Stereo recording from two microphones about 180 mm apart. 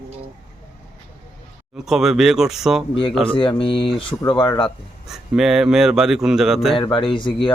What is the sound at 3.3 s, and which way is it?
Speech, 30° left (ahead or behind).